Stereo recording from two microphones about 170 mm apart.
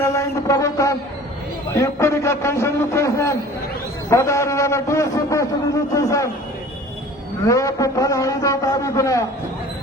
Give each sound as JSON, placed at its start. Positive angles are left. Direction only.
{"t": 0.0, "sound": "a man's voice", "side_deg": 20}
{"t": 7.4, "sound": "a man's voice", "side_deg": 20}